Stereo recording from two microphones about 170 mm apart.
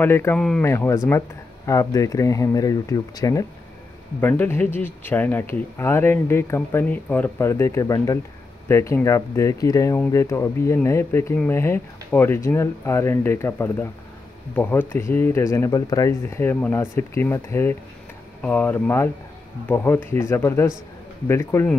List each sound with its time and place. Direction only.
0.0 s speech: 10° left (ahead or behind)